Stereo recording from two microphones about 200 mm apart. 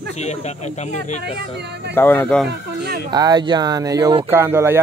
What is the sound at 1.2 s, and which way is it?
Speech, 55° right (ahead or behind).